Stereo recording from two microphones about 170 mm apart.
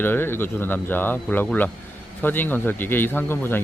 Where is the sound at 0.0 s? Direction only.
10° left (ahead or behind).